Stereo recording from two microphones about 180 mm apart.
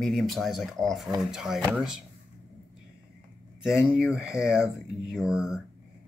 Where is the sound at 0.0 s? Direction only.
Centre (ahead or behind).